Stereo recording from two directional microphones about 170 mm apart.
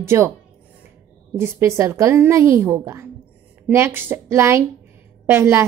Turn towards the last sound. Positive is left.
turn(degrees=-15)  # may be behind; listen again after turning